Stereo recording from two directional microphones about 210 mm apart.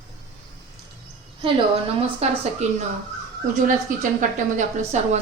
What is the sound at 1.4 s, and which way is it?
A woman's voice, 25° right (ahead or behind).